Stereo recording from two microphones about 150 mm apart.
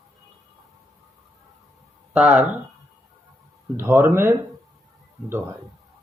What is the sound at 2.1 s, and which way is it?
Speech, 10° right (ahead or behind).